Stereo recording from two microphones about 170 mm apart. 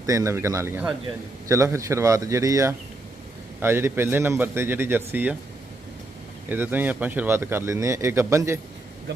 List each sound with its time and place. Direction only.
0.0 s speech: 20° right (ahead or behind)
6.5 s speech: 10° right (ahead or behind)